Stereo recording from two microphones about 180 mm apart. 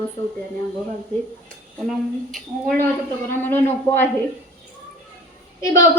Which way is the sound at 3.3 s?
10° left (ahead or behind).